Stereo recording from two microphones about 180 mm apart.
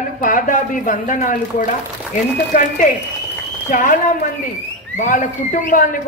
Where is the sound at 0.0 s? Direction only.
45° left (ahead or behind).